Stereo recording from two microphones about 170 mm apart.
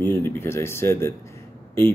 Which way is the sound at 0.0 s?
15° left (ahead or behind).